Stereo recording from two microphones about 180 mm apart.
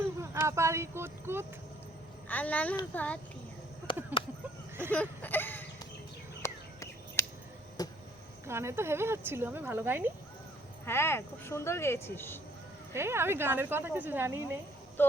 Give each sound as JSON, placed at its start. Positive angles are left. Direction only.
{"t": 0.0, "sound": "a sound", "side_deg": -15}
{"t": 2.2, "sound": "speech", "side_deg": 10}
{"t": 4.9, "sound": "a sound", "side_deg": 10}
{"t": 8.4, "sound": "speech", "side_deg": -15}
{"t": 10.8, "sound": "speech", "side_deg": 15}
{"t": 12.9, "sound": "speech", "side_deg": -15}